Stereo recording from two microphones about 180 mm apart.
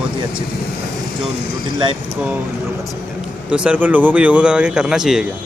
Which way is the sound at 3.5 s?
5° right (ahead or behind).